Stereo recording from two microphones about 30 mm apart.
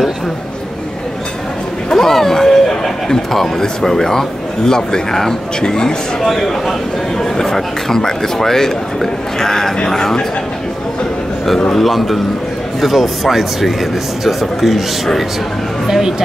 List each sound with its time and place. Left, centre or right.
2.0 s speech: centre
6.2 s a man's voice: centre
11.7 s a man's voice: centre
15.9 s speech: centre